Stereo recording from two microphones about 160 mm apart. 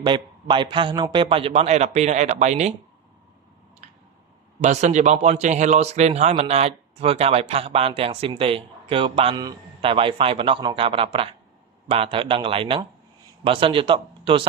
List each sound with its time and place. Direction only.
0.0 s a man's voice: 30° right (ahead or behind); by 2.7 s 45° right (ahead or behind)
4.6 s a man's voice: 45° right (ahead or behind)